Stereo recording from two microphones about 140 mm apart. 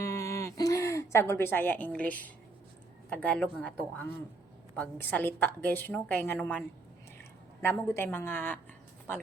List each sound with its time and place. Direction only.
0.0 s a sound: 20° left (ahead or behind)
3.1 s a woman's voice: 10° left (ahead or behind)
7.6 s a woman's voice: 15° left (ahead or behind)